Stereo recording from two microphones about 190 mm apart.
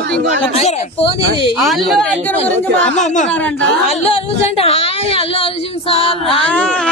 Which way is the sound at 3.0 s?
40° left (ahead or behind).